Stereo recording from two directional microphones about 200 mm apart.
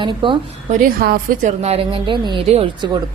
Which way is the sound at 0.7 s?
40° right (ahead or behind).